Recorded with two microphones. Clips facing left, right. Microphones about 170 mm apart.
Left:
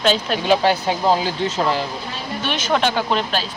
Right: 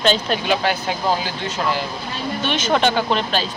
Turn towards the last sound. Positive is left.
turn(degrees=0)  # may be behind; listen again after turning